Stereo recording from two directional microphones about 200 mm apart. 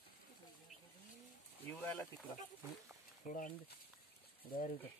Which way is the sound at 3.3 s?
40° left (ahead or behind).